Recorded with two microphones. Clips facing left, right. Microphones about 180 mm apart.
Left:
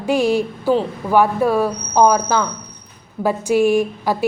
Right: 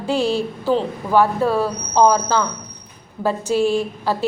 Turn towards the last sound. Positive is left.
turn(degrees=15)  # may be behind; listen again after turning